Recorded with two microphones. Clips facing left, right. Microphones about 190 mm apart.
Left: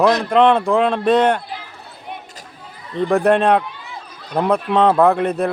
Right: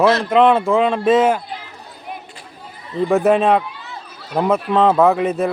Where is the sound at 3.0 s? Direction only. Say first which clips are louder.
Even; centre (ahead or behind).